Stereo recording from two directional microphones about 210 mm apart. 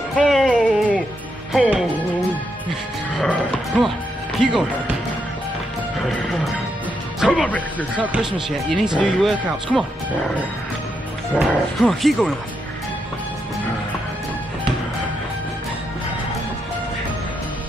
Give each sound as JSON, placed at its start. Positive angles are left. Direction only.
{"t": 0.1, "sound": "music", "side_deg": 0}
{"t": 1.5, "sound": "speech", "side_deg": -5}
{"t": 3.2, "sound": "music", "side_deg": 5}
{"t": 4.4, "sound": "speech", "side_deg": 0}
{"t": 6.0, "sound": "speech", "side_deg": 0}
{"t": 7.9, "sound": "speech", "side_deg": -5}
{"t": 11.3, "sound": "speech", "side_deg": 0}